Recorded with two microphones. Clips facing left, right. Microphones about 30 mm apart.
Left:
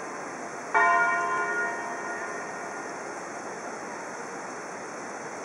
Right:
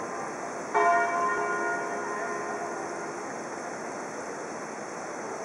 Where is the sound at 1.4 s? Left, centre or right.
Centre.